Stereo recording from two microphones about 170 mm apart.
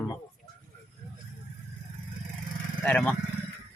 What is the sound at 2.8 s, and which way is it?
Speech, 5° left (ahead or behind).